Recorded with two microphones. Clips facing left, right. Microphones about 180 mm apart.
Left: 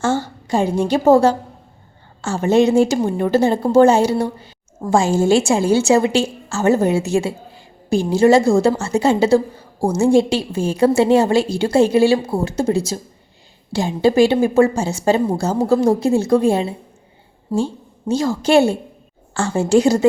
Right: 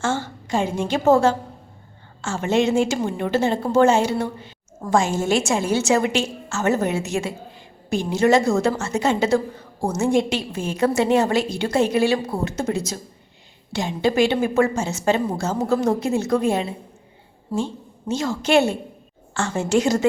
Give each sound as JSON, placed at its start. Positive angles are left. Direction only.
{"t": 0.0, "sound": "a woman's voice", "side_deg": 40}
{"t": 18.1, "sound": "a woman's voice", "side_deg": 35}